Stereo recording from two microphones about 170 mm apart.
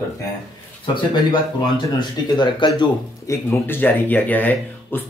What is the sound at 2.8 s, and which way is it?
Speech, 15° left (ahead or behind).